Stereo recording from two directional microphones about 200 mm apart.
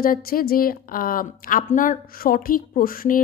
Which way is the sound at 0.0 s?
45° left (ahead or behind).